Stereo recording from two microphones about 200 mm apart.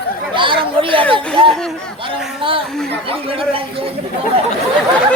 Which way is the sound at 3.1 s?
25° right (ahead or behind).